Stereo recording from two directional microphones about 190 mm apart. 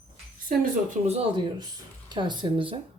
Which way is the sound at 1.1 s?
30° right (ahead or behind).